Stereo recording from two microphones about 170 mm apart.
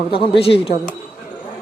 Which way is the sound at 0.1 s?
30° left (ahead or behind).